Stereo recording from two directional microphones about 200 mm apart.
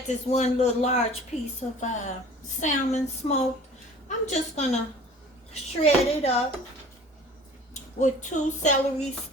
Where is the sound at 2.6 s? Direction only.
35° left (ahead or behind).